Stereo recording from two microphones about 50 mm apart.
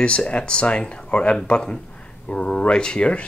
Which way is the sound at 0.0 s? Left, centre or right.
Left.